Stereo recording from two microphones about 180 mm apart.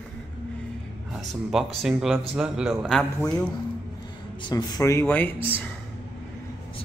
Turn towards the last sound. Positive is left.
turn(degrees=10)  # may be behind; listen again after turning